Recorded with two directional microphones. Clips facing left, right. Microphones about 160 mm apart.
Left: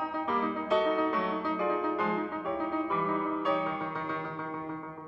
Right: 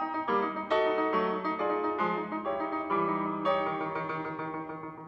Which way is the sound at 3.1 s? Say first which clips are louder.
Left 1 dB; 5° right (ahead or behind).